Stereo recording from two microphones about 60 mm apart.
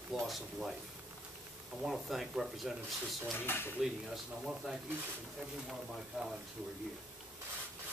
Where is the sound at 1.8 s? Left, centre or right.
Centre.